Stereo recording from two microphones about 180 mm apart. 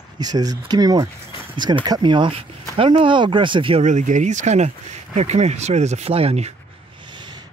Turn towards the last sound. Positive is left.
turn(degrees=-25)  # may be behind; listen again after turning